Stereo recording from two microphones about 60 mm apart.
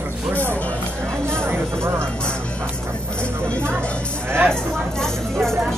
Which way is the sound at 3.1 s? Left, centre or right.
Centre.